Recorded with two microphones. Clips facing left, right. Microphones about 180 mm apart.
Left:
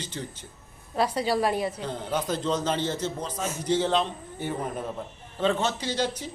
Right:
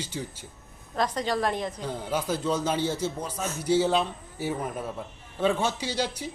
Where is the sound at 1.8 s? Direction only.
10° right (ahead or behind).